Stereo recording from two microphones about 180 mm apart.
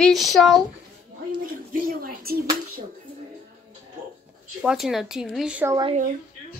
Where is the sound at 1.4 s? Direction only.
55° right (ahead or behind).